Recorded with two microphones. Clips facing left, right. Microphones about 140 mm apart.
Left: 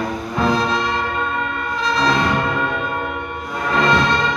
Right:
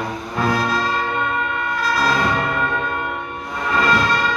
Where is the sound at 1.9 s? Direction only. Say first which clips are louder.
Left 2 dB; 20° left (ahead or behind).